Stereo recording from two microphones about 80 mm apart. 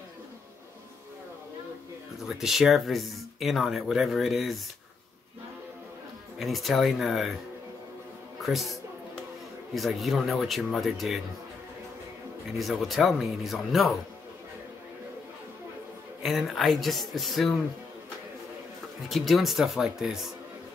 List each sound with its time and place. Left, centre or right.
2.2 s speech: centre
6.4 s speech: centre
8.4 s a man's voice: centre
9.8 s speech: centre
12.5 s speech: centre
16.2 s speech: centre
19.0 s speech: centre